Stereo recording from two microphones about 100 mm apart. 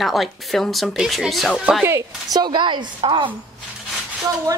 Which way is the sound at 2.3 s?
45° right (ahead or behind).